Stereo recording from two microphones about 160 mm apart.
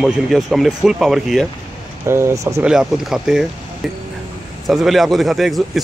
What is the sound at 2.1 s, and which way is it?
Speech, 15° right (ahead or behind).